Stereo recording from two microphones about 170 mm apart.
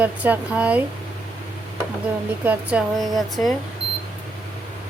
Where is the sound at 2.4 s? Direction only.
10° right (ahead or behind).